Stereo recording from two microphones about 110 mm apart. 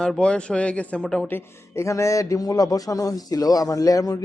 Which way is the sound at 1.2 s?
20° left (ahead or behind).